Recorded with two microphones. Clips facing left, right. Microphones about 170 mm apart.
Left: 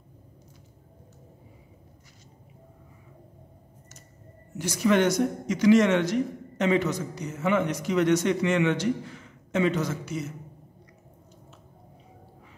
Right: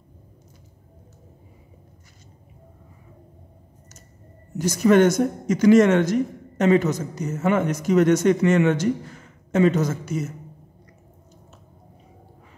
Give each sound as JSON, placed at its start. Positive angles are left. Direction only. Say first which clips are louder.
{"t": 4.6, "sound": "a man's voice", "louder": "right 6 dB", "side_deg": -45}